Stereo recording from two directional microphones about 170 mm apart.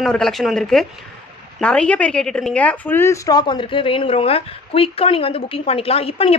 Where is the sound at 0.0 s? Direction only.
Centre (ahead or behind).